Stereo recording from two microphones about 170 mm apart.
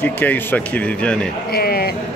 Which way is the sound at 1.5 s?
65° left (ahead or behind).